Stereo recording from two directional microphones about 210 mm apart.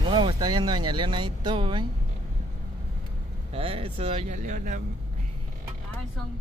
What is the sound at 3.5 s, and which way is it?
Speech, 25° right (ahead or behind).